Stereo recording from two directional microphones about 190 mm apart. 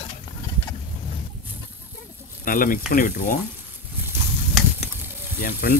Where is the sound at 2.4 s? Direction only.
45° left (ahead or behind).